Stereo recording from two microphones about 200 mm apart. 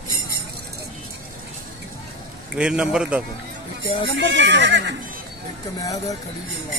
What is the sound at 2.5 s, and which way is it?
Speech, 5° right (ahead or behind).